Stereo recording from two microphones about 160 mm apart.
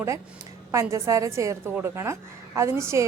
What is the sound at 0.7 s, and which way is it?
A woman's voice, 20° right (ahead or behind).